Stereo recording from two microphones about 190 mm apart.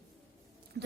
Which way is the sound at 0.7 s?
60° right (ahead or behind).